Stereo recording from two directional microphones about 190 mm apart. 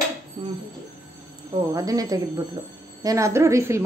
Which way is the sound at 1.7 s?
20° right (ahead or behind).